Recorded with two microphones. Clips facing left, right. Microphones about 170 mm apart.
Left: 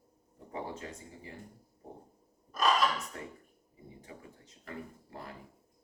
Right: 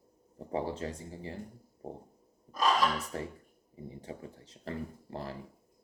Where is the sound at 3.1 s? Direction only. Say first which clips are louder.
Right 6 dB; 30° right (ahead or behind).